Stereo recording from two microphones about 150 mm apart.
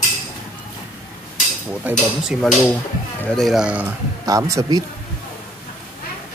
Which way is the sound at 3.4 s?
Centre (ahead or behind).